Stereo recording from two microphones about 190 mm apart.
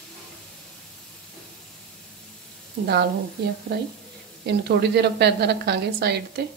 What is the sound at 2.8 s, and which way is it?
A woman's voice, 55° right (ahead or behind).